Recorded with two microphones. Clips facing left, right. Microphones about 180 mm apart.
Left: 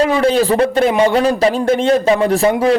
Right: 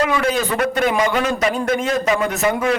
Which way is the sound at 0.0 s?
30° left (ahead or behind).